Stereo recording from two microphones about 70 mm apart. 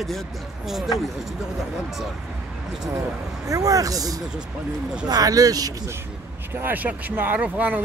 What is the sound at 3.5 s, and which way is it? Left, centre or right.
Speech, right.